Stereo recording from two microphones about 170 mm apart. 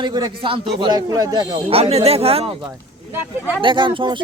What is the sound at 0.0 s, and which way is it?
Speech, 25° right (ahead or behind).